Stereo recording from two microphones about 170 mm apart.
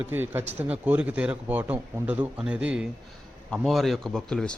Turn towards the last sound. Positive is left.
turn(degrees=5)  # may be behind; listen again after turning